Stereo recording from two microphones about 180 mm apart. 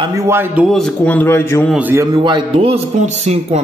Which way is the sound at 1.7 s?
10° right (ahead or behind).